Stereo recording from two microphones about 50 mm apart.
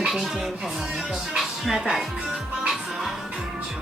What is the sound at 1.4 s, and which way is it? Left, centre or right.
Music, centre.